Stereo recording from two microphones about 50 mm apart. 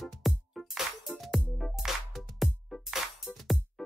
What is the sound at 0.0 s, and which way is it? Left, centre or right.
Music, centre.